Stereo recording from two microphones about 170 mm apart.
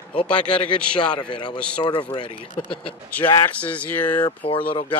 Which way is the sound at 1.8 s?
30° left (ahead or behind).